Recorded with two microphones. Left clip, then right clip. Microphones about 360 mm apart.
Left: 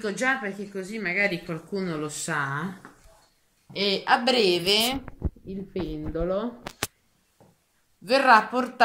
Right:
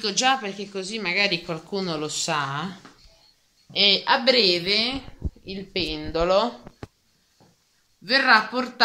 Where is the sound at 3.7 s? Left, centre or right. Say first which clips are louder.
Right 4 dB; centre.